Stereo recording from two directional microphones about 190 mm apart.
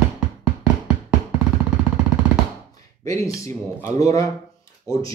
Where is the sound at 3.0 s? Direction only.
15° left (ahead or behind).